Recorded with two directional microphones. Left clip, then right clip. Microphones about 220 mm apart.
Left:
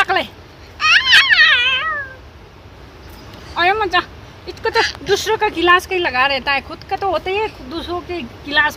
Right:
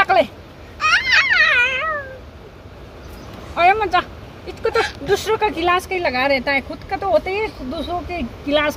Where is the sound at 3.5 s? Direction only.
40° left (ahead or behind).